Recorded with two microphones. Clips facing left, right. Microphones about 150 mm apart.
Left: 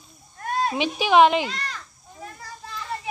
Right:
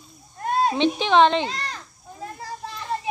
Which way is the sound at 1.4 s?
30° right (ahead or behind).